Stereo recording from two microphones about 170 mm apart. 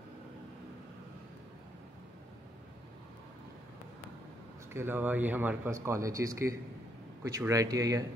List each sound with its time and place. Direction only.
4.7 s a man's voice: 10° right (ahead or behind)